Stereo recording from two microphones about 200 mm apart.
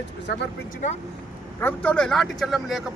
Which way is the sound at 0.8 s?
40° left (ahead or behind).